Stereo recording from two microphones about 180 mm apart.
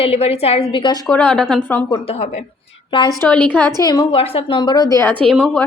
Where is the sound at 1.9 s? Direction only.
30° left (ahead or behind).